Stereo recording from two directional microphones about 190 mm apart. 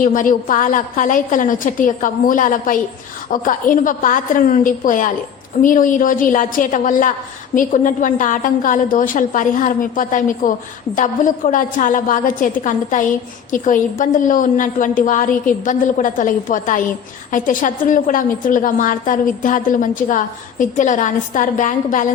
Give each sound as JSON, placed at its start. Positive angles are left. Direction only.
{"t": 0.0, "sound": "a woman's voice", "side_deg": 45}